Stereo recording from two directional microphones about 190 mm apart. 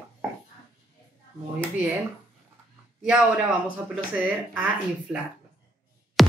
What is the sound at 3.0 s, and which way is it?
A man's voice, 5° right (ahead or behind).